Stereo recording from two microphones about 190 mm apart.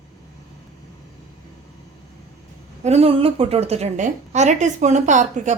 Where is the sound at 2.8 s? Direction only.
35° right (ahead or behind).